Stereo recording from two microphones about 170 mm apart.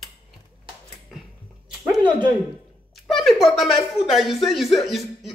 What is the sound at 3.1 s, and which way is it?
Speech, centre (ahead or behind).